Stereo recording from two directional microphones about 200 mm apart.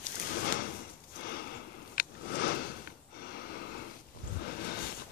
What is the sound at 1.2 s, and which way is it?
Sniff, 50° left (ahead or behind).